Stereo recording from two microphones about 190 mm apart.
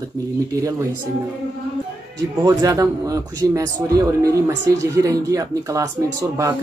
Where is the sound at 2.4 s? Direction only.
15° right (ahead or behind).